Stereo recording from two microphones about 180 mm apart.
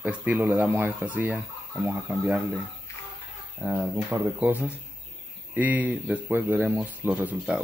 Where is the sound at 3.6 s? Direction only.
10° right (ahead or behind).